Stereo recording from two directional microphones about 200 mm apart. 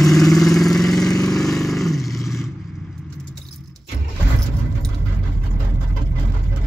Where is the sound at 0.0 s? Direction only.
Centre (ahead or behind).